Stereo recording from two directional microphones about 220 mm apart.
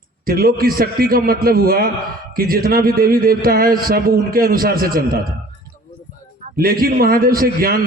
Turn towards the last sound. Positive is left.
turn(degrees=-40)  # may be behind; listen again after turning